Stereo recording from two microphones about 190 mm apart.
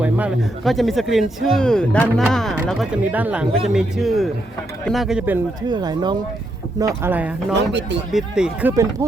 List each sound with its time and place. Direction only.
0.0 s speech: 5° right (ahead or behind)
5.6 s speech: 20° right (ahead or behind)
7.5 s speech: 65° right (ahead or behind)
8.1 s speech: 5° right (ahead or behind)
8.7 s speech: 15° right (ahead or behind)